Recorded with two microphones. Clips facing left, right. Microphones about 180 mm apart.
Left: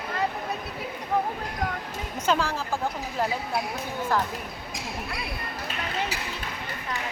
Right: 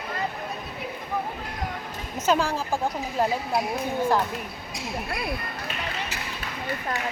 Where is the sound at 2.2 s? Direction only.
10° right (ahead or behind).